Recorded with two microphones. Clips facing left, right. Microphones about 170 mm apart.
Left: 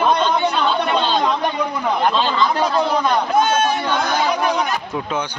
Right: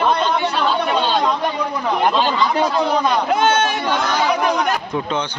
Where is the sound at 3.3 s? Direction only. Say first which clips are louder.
Left 2 dB; 90° right.